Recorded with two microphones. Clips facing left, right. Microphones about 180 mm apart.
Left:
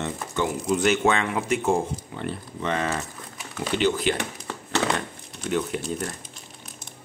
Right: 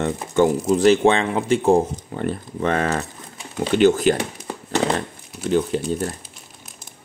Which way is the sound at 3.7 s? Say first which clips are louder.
Right 8 dB; 45° right (ahead or behind).